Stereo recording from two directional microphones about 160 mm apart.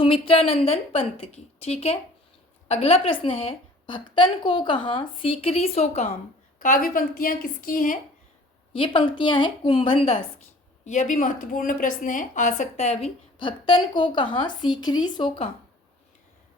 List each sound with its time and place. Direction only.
0.0 s a woman's voice: 35° left (ahead or behind)
6.6 s a woman's voice: 60° left (ahead or behind)
8.7 s a woman's voice: 30° left (ahead or behind)
10.8 s a woman's voice: 50° left (ahead or behind)
13.4 s a woman's voice: 30° left (ahead or behind)